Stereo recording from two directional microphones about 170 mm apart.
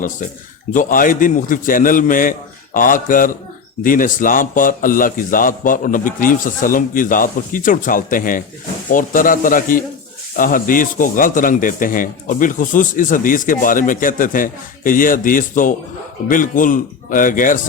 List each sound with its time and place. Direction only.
0.7 s speech: 50° left (ahead or behind)